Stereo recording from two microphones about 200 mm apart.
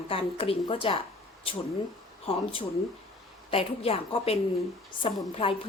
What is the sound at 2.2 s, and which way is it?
A woman's voice, 30° left (ahead or behind).